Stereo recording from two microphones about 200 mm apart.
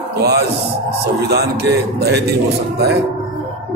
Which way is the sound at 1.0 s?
55° right (ahead or behind).